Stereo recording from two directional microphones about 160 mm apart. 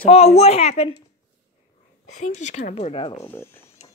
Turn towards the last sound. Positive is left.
turn(degrees=15)  # may be behind; listen again after turning